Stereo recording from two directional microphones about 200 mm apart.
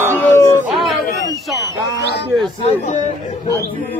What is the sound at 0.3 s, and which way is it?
Howl, 15° left (ahead or behind).